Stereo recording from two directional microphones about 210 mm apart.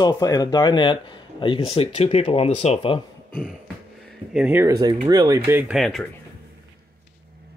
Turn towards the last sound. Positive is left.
turn(degrees=0)  # may be behind; listen again after turning